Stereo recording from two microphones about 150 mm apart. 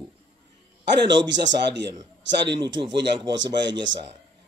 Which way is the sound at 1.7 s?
30° right (ahead or behind).